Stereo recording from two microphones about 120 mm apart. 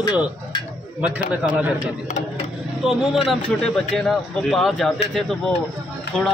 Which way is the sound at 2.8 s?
Centre (ahead or behind).